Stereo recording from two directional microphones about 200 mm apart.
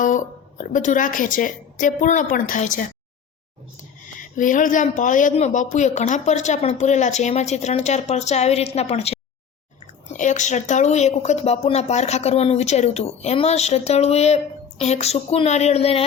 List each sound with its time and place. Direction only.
0.6 s a woman's voice: 40° left (ahead or behind)
4.2 s a woman's voice: 40° left (ahead or behind)